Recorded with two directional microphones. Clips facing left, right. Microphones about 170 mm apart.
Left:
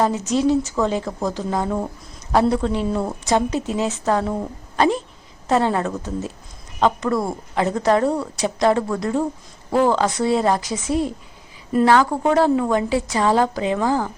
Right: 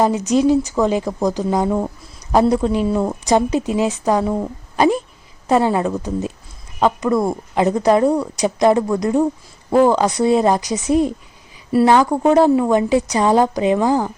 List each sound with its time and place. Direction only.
0.0 s a woman's voice: 15° right (ahead or behind)